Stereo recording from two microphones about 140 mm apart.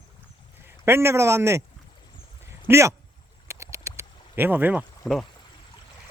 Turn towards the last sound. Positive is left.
turn(degrees=0)  # may be behind; listen again after turning